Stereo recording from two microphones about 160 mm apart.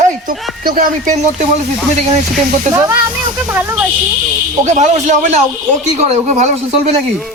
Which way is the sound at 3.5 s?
15° right (ahead or behind).